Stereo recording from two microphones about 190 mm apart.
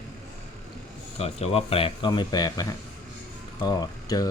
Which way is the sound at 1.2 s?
30° left (ahead or behind).